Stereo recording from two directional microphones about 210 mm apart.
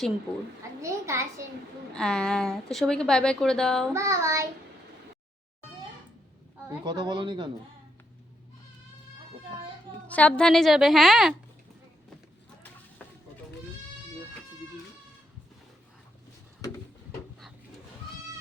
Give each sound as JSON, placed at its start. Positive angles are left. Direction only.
{"t": 0.8, "sound": "a child's voice", "side_deg": -15}
{"t": 2.0, "sound": "a woman's voice", "side_deg": 5}
{"t": 3.9, "sound": "a child's voice", "side_deg": -15}
{"t": 6.7, "sound": "speech", "side_deg": -20}
{"t": 10.1, "sound": "a woman's voice", "side_deg": 5}
{"t": 16.6, "sound": "a sound", "side_deg": 15}